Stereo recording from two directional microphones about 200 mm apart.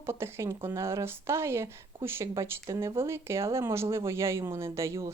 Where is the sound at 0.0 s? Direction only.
10° right (ahead or behind).